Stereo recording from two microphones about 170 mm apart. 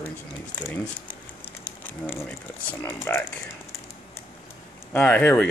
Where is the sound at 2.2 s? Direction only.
5° left (ahead or behind).